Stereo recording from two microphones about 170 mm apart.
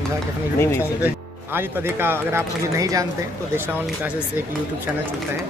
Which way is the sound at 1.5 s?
15° right (ahead or behind).